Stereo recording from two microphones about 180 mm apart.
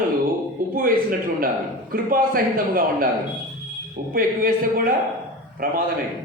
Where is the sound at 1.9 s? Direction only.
50° right (ahead or behind).